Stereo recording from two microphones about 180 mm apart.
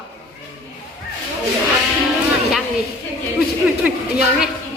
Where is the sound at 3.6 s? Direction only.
5° right (ahead or behind).